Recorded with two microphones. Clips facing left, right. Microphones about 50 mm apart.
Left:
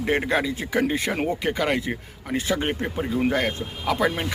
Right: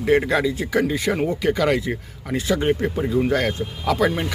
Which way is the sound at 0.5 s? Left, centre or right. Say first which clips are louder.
Right 2 dB; left.